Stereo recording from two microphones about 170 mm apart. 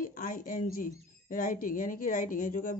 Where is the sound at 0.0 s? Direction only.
55° left (ahead or behind).